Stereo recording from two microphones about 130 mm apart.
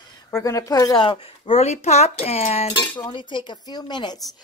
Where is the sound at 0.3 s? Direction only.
25° left (ahead or behind); by 2.7 s 55° left (ahead or behind).